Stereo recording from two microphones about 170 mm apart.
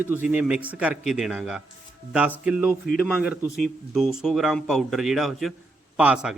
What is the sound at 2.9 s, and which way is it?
Speech, 60° left (ahead or behind).